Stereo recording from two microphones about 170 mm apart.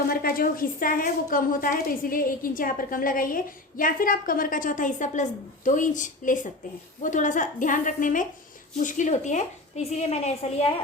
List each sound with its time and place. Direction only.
0.1 s a woman's voice: 60° left (ahead or behind); by 10.8 s 40° left (ahead or behind)